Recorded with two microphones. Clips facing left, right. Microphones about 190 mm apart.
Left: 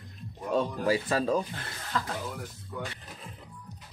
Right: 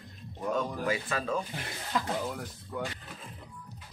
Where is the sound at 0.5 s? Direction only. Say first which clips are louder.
Left 6 dB; 35° left (ahead or behind).